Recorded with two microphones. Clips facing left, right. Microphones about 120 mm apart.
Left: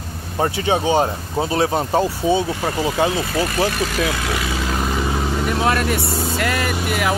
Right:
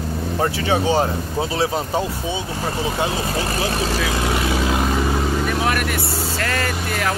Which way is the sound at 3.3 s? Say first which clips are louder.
Left 3 dB; 30° right (ahead or behind).